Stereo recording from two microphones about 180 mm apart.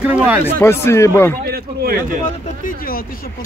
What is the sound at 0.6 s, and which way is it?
Speech, 15° left (ahead or behind).